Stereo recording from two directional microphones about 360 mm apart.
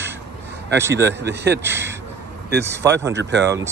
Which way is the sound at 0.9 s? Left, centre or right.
Right.